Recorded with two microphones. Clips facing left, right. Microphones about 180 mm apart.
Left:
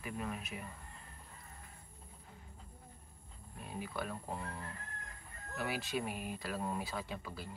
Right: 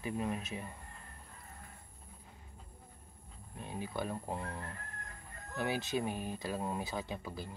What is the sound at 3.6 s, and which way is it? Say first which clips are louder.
Speech: right 3 dB; 25° right (ahead or behind).